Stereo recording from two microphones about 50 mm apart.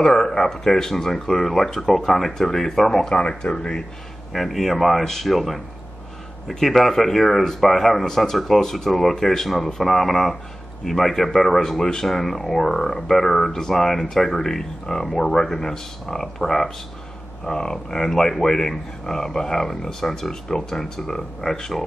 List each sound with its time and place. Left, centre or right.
0.0 s speech: centre
3.2 s speech: left
4.3 s speech: centre